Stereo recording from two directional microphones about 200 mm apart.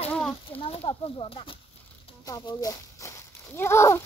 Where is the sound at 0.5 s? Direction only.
30° left (ahead or behind).